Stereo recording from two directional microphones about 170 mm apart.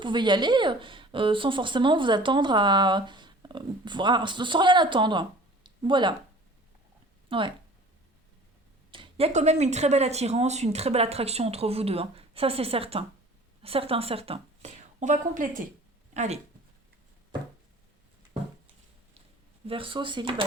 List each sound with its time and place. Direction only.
0.0 s speech: 25° right (ahead or behind)
7.3 s speech: 30° right (ahead or behind)
8.9 s a woman's voice: 30° right (ahead or behind)
19.6 s speech: 30° right (ahead or behind)